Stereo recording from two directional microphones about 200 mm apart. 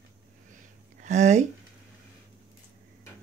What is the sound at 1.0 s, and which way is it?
Speech, 35° right (ahead or behind).